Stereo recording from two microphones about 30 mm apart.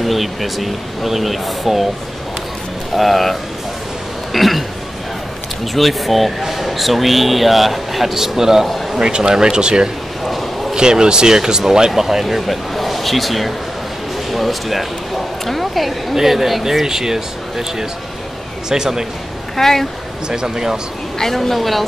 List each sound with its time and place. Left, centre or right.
0.0 s speech: centre
3.0 s speech: centre
4.3 s a sound: centre
5.8 s speech: centre
9.0 s speech: right
10.2 s bow-wow: centre
10.7 s speech: right
11.9 s a woman's voice: centre
16.8 s speech: centre
19.5 s a woman's voice: centre
20.2 s speech: right
21.2 s a woman's voice: centre